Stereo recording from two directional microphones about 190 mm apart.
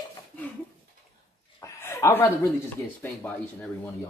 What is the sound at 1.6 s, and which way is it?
Chuckle, 15° left (ahead or behind).